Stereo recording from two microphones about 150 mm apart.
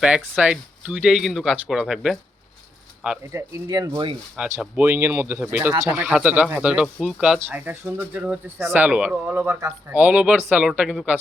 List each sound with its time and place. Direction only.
0.0 s speech: 5° right (ahead or behind)
3.7 s speech: 25° right (ahead or behind)
4.6 s speech: 10° right (ahead or behind)